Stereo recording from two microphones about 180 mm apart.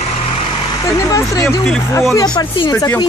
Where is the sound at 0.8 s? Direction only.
15° left (ahead or behind).